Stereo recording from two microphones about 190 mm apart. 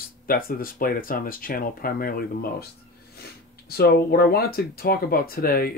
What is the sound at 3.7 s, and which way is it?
Speech, 55° left (ahead or behind).